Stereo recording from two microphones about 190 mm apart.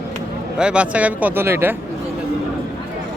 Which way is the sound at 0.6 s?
5° right (ahead or behind).